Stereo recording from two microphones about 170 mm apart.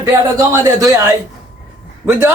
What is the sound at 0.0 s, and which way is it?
A man's voice, 15° right (ahead or behind).